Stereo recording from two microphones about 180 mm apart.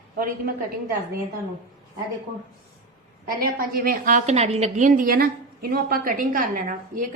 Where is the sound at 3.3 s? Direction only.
55° right (ahead or behind).